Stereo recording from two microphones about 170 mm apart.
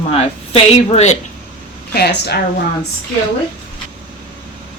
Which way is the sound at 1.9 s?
70° left (ahead or behind).